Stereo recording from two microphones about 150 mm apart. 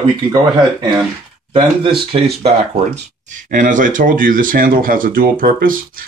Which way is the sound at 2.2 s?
70° right (ahead or behind).